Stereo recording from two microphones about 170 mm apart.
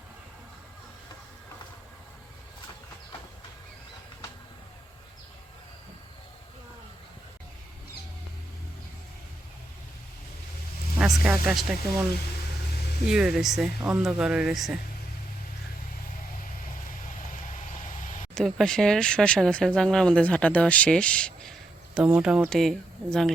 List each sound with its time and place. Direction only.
11.2 s speech: centre (ahead or behind)
13.1 s speech: 5° right (ahead or behind)
17.5 s a sound: 50° left (ahead or behind)
18.3 s speech: 5° left (ahead or behind)
21.9 s speech: 5° right (ahead or behind)